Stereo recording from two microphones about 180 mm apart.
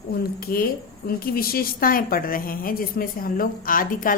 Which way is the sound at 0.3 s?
55° left (ahead or behind).